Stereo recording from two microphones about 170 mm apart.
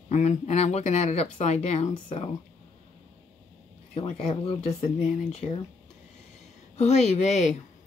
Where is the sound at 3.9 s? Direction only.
30° left (ahead or behind).